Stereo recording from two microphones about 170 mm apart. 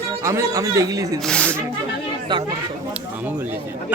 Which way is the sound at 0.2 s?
20° right (ahead or behind).